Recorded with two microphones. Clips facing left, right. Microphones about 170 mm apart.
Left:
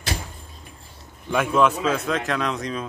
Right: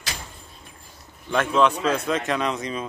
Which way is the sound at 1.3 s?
5° left (ahead or behind).